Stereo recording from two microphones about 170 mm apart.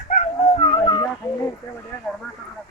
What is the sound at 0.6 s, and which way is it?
Dog, 25° left (ahead or behind).